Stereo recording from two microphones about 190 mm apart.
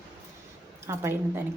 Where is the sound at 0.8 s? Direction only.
10° right (ahead or behind).